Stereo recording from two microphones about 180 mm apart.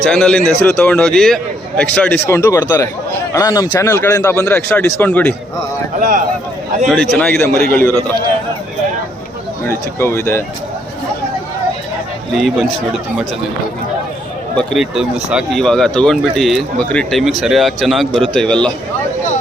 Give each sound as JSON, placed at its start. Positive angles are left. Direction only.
{"t": 0.0, "sound": "speech", "side_deg": 5}
{"t": 2.4, "sound": "speech", "side_deg": 20}
{"t": 6.0, "sound": "speech", "side_deg": -45}
{"t": 6.8, "sound": "speech", "side_deg": 5}
{"t": 9.6, "sound": "speech", "side_deg": 15}
{"t": 12.3, "sound": "speech", "side_deg": 0}
{"t": 14.5, "sound": "speech", "side_deg": 0}